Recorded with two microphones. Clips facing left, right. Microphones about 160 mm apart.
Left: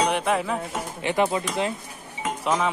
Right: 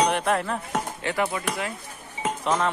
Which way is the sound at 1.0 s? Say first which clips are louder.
Left 6 dB; 20° left (ahead or behind).